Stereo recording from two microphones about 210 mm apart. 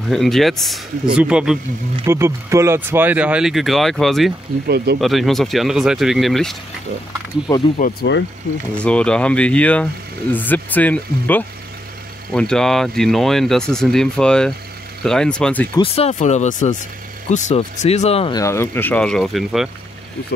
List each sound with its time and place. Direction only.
0.1 s speech: centre (ahead or behind)
4.6 s speech: 50° right (ahead or behind)
5.0 s speech: centre (ahead or behind)
7.8 s speech: 50° left (ahead or behind)
8.7 s speech: 5° left (ahead or behind)
15.7 s speech: 25° left (ahead or behind)
18.4 s speech: 10° left (ahead or behind)